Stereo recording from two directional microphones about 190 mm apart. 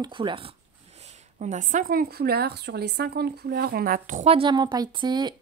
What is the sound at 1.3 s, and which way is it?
A woman's voice, 40° right (ahead or behind).